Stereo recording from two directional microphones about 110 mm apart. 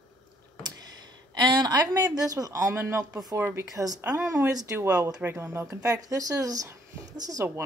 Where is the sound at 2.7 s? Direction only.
20° right (ahead or behind).